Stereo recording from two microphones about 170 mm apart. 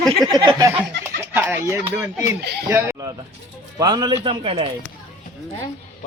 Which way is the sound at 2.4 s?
75° right (ahead or behind).